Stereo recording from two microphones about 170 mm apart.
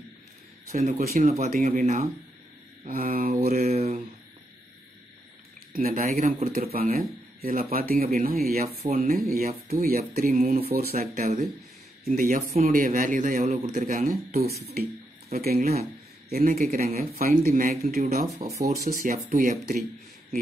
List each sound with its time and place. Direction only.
0.7 s speech: 50° right (ahead or behind)
3.6 s mantra: 35° right (ahead or behind)
5.7 s speech: 55° right (ahead or behind)
10.7 s speech: 65° right (ahead or behind)
14.3 s speech: 40° right (ahead or behind)
15.3 s speech: 60° right (ahead or behind)
18.4 s speech: 25° right (ahead or behind)
18.8 s speech: 55° right (ahead or behind)